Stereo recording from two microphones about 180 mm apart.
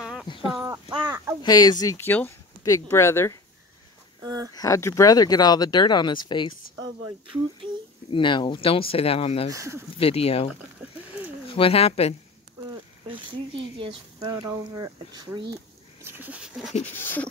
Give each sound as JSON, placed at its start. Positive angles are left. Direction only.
{"t": 0.0, "sound": "a sound", "side_deg": -5}
{"t": 0.9, "sound": "a sound", "side_deg": -20}
{"t": 1.4, "sound": "speech", "side_deg": 20}
{"t": 4.2, "sound": "speech", "side_deg": -20}
{"t": 4.6, "sound": "speech", "side_deg": 15}
{"t": 8.1, "sound": "speech", "side_deg": 25}
{"t": 9.5, "sound": "speech", "side_deg": -15}
{"t": 9.9, "sound": "speech", "side_deg": 35}
{"t": 13.7, "sound": "speech", "side_deg": -30}
{"t": 14.2, "sound": "speech", "side_deg": -15}
{"t": 16.0, "sound": "speech", "side_deg": -10}
{"t": 16.8, "sound": "speech", "side_deg": 10}